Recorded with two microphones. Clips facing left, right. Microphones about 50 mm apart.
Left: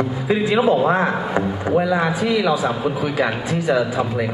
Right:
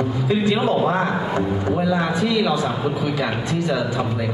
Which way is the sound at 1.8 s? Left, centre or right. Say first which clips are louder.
Left 3 dB; left.